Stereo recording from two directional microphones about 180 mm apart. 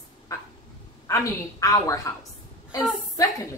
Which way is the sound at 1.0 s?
15° left (ahead or behind).